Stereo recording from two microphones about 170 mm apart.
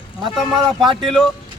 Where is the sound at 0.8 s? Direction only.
30° right (ahead or behind).